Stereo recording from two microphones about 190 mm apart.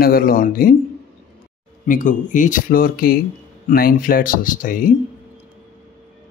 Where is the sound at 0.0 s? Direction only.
50° left (ahead or behind).